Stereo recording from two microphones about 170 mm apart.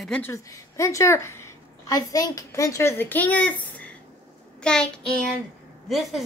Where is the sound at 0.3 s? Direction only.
20° left (ahead or behind).